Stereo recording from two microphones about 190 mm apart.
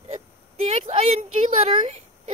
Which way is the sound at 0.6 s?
35° right (ahead or behind).